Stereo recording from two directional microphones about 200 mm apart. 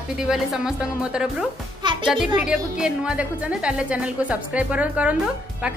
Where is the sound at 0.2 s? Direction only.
5° right (ahead or behind).